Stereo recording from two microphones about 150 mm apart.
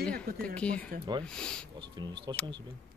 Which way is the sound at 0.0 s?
5° left (ahead or behind).